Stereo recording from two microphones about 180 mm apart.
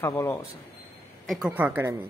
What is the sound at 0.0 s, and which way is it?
Speech, 15° left (ahead or behind).